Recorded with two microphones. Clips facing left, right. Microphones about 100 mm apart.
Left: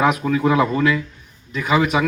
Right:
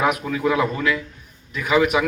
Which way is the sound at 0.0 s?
25° left (ahead or behind).